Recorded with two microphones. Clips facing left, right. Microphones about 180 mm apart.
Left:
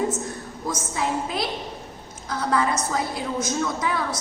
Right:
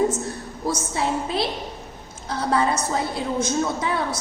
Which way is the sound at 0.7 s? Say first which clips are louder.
Right 2 dB; 30° right (ahead or behind).